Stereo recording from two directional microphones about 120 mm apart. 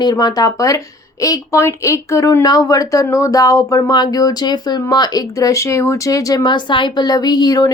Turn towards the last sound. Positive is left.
turn(degrees=30)  # may be behind; listen again after turning